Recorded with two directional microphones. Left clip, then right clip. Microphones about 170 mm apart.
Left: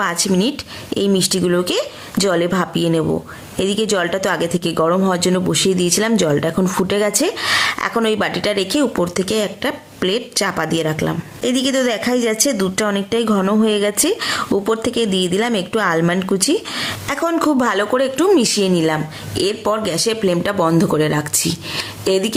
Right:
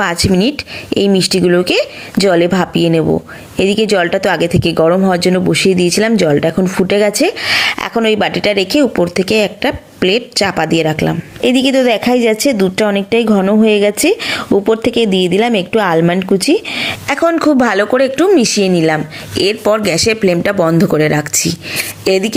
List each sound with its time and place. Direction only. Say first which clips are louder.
0.0 s a woman's voice: right 5 dB; 20° right (ahead or behind)